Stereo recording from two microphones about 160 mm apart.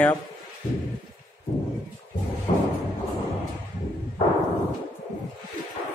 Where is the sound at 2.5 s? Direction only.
40° left (ahead or behind).